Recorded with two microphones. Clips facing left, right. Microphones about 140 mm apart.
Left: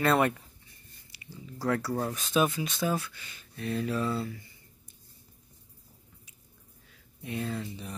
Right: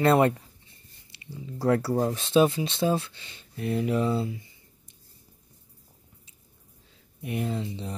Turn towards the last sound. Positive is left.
turn(degrees=-25)  # may be behind; listen again after turning